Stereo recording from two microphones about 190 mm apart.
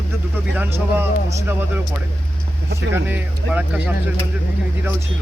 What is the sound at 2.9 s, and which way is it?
A man's voice, 10° right (ahead or behind).